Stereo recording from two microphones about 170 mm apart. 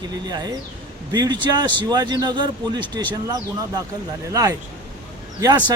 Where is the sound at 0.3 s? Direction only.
25° right (ahead or behind).